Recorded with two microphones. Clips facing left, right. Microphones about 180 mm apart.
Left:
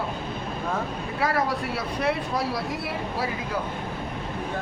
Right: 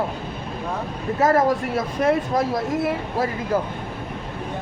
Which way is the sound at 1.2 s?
45° right (ahead or behind).